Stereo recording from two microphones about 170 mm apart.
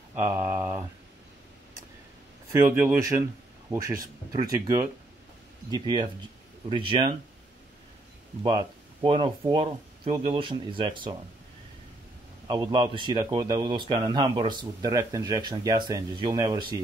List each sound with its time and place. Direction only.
0.1 s speech: 15° right (ahead or behind)
2.5 s speech: 15° right (ahead or behind); by 7.1 s 30° right (ahead or behind)
8.4 s speech: 25° right (ahead or behind)
12.4 s speech: 25° right (ahead or behind)